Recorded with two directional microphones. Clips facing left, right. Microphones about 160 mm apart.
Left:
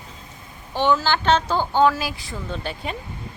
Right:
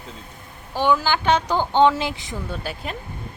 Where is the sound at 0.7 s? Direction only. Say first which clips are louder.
Even; 10° right (ahead or behind).